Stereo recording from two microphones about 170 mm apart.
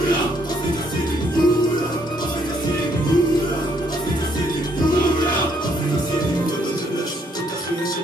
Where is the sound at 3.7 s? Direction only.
25° left (ahead or behind).